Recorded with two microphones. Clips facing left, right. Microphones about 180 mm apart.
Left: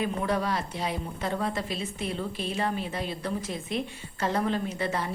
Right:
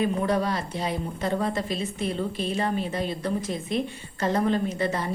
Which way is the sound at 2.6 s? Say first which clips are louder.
Right 3 dB; centre (ahead or behind).